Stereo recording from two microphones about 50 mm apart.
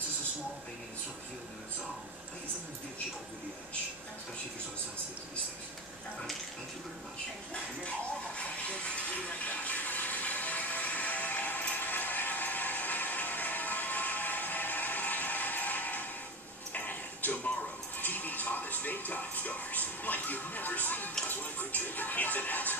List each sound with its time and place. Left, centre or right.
8.4 s speech: left
9.5 s a sound: left
16.7 s tick-tock: left
17.9 s television: left
21.3 s music: left